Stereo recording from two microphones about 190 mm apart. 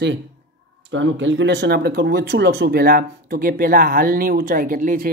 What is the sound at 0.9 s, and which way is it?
Speech, 85° right.